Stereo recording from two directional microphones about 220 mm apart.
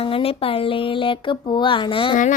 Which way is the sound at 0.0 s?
25° left (ahead or behind).